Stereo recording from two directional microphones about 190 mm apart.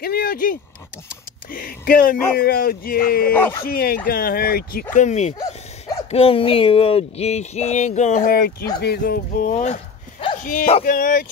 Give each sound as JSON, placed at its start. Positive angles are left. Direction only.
{"t": 0.0, "sound": "speech", "side_deg": 55}
{"t": 4.9, "sound": "speech", "side_deg": 40}